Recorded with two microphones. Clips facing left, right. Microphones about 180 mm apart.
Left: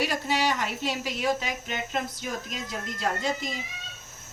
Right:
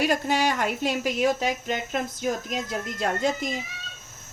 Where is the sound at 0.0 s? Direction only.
50° right (ahead or behind).